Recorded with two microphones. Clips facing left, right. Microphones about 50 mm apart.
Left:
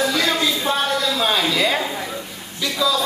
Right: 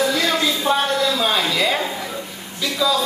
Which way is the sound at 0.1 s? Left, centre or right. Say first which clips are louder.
Even; centre.